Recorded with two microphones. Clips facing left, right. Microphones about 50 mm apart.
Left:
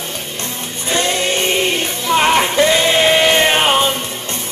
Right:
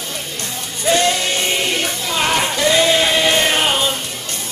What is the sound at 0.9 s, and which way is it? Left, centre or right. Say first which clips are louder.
Music: left 2 dB; left.